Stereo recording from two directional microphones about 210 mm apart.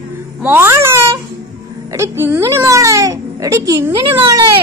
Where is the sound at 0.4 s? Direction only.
10° right (ahead or behind).